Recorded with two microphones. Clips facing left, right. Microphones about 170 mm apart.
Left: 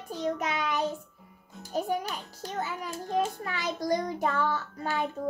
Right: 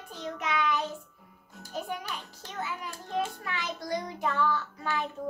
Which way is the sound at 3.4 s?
40° left (ahead or behind).